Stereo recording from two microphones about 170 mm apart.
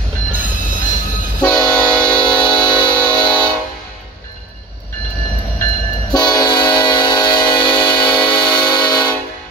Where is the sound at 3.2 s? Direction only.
10° left (ahead or behind).